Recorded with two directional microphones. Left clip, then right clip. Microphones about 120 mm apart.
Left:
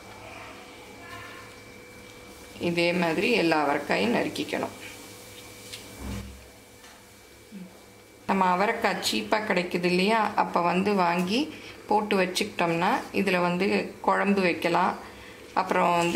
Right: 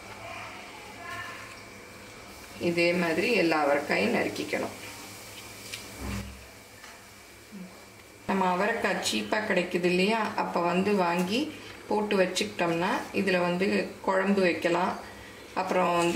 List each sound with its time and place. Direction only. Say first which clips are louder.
2.6 s a woman's voice: left 1 dB; 35° left (ahead or behind)
8.3 s a woman's voice: left 3 dB; 30° left (ahead or behind)